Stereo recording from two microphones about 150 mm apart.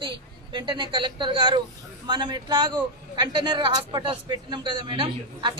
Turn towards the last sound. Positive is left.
turn(degrees=-30)  # may be behind; listen again after turning